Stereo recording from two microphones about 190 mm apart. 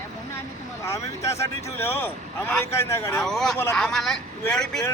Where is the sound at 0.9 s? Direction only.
15° left (ahead or behind).